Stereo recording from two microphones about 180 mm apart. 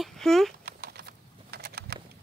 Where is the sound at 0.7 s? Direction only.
60° right (ahead or behind).